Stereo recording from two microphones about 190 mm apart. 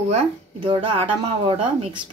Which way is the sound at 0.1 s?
30° right (ahead or behind).